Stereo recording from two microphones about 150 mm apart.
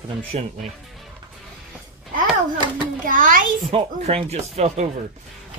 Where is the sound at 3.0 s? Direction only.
65° right (ahead or behind).